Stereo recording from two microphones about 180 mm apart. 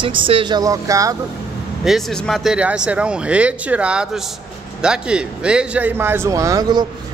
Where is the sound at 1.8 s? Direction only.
Centre (ahead or behind).